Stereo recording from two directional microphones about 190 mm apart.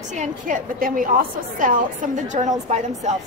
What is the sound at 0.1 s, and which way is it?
A woman's voice, 40° right (ahead or behind).